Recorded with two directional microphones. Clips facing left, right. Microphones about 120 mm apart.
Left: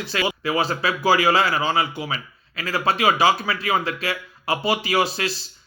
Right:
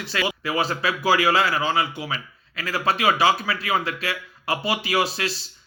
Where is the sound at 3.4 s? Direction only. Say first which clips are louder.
Left 2 dB; 25° left (ahead or behind).